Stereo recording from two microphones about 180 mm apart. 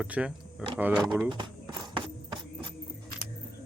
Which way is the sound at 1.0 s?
Centre (ahead or behind).